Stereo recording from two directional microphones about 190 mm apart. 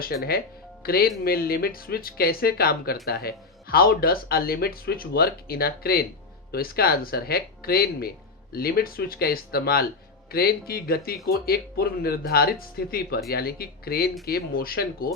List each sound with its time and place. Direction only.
0.0 s speech: 55° left (ahead or behind)